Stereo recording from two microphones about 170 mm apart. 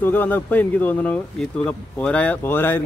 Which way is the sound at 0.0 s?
10° left (ahead or behind).